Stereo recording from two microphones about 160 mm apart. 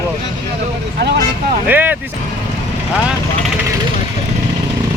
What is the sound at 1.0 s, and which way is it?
Speech, 90° right.